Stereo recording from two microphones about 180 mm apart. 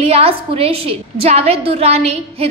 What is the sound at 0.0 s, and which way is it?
A woman's voice, 35° right (ahead or behind).